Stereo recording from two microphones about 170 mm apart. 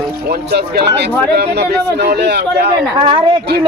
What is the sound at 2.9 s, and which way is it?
Speech, 30° right (ahead or behind).